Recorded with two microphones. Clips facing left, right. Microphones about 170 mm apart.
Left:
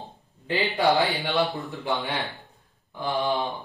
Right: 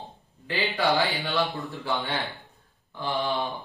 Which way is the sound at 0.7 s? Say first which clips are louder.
Left 3 dB; 20° left (ahead or behind).